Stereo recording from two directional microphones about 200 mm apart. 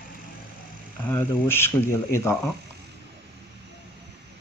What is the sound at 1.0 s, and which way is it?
Speech, 10° left (ahead or behind).